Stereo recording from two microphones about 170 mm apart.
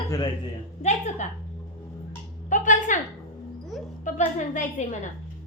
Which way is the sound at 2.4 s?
50° left (ahead or behind).